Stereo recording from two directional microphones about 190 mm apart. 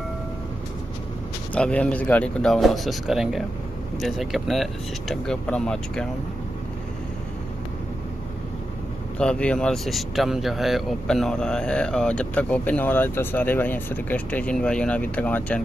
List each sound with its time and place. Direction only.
1.5 s speech: 5° left (ahead or behind)
9.2 s speech: 5° left (ahead or behind)